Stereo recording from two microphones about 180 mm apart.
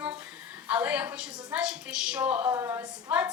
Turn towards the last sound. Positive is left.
turn(degrees=-10)  # may be behind; listen again after turning